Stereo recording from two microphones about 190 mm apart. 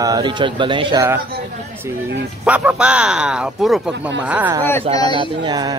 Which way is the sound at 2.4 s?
10° right (ahead or behind).